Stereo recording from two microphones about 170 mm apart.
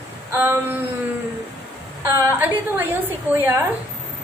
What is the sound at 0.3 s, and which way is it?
Speech, 15° right (ahead or behind).